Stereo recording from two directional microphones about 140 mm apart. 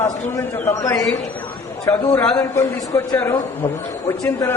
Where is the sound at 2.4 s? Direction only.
20° left (ahead or behind).